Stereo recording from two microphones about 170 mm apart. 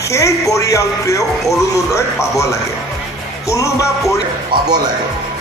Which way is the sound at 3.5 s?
20° left (ahead or behind).